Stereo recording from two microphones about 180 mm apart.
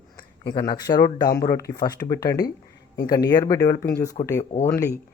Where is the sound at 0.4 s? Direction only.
25° left (ahead or behind).